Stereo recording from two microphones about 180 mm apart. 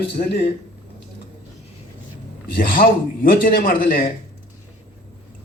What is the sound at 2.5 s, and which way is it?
A man's voice, 50° left (ahead or behind).